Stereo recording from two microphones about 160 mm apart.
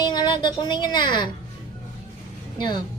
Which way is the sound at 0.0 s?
25° left (ahead or behind).